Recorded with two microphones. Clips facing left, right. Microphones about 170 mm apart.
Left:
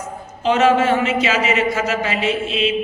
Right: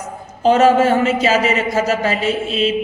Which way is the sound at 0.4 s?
40° right (ahead or behind).